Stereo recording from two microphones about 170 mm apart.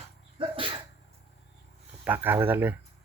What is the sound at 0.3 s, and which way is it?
Sneeze, 30° right (ahead or behind).